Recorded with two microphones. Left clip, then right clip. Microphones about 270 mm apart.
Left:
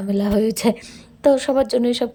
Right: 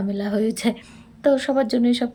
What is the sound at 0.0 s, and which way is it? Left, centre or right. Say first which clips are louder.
Speech: left 4 dB; left.